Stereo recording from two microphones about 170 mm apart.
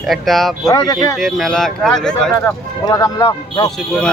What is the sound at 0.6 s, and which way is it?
Speech, 20° left (ahead or behind).